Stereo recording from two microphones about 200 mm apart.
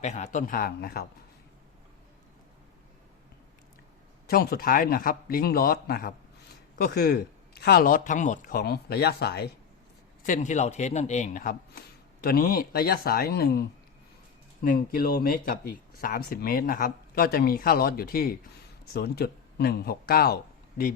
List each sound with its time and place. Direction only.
0.0 s speech: 35° left (ahead or behind)
4.3 s speech: 50° left (ahead or behind)
10.2 s speech: 40° left (ahead or behind)